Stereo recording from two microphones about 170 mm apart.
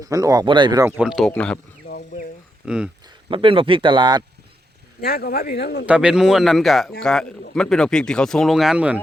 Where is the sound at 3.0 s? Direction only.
30° right (ahead or behind).